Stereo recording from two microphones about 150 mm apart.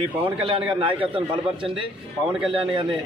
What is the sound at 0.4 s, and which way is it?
A man's voice, 35° right (ahead or behind).